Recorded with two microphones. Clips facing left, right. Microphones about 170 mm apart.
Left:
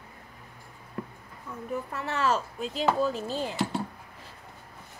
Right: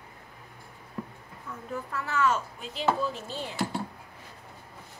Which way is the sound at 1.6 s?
25° left (ahead or behind).